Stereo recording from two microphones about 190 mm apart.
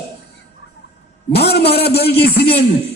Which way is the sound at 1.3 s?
60° left (ahead or behind).